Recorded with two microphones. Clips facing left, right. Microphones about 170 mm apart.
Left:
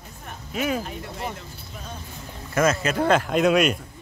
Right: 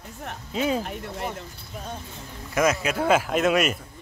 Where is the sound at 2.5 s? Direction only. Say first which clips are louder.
Left 1 dB; 15° right (ahead or behind).